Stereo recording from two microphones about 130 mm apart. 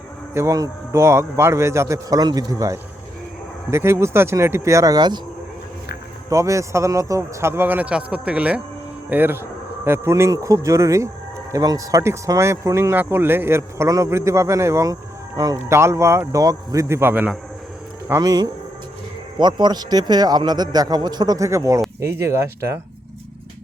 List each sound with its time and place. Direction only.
0.3 s speech: 25° right (ahead or behind)
6.3 s speech: 25° right (ahead or behind)
18.1 s a man's voice: 30° right (ahead or behind)